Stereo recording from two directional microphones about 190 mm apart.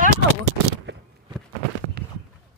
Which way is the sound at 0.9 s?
65° right (ahead or behind).